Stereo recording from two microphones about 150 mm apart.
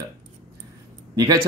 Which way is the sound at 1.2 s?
25° right (ahead or behind).